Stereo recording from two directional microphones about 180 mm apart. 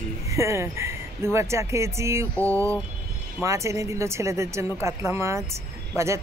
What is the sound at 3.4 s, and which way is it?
Speech, 15° right (ahead or behind).